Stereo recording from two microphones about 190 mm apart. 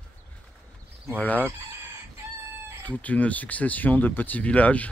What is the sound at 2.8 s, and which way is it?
Speech, 10° left (ahead or behind).